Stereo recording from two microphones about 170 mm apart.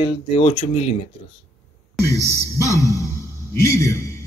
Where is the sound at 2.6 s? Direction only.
20° left (ahead or behind).